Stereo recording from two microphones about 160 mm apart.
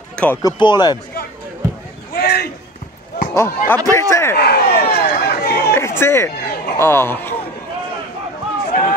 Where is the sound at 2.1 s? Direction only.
80° left.